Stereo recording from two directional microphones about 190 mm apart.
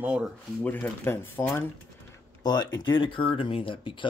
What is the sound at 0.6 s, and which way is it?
Speech, 10° left (ahead or behind).